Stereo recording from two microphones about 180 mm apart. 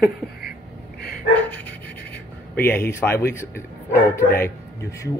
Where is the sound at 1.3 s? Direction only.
10° left (ahead or behind).